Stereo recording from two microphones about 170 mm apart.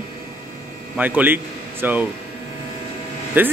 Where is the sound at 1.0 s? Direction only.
10° right (ahead or behind).